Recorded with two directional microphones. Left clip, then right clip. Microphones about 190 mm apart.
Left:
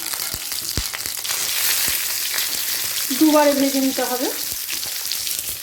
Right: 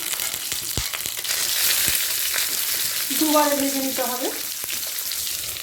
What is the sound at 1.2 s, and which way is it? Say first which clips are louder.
Frying: even; centre (ahead or behind).